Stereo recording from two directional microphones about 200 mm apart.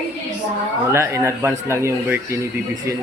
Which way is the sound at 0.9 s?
15° right (ahead or behind).